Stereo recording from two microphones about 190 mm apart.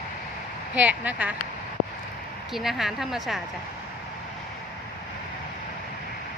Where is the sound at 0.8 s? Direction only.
10° right (ahead or behind).